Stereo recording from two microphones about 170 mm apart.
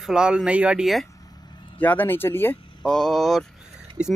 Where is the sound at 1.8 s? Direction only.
10° left (ahead or behind).